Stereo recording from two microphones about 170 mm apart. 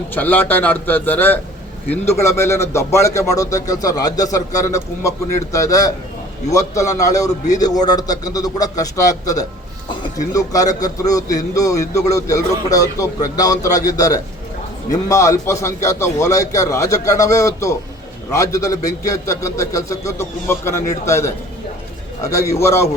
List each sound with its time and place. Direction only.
0.1 s a man's voice: 10° left (ahead or behind)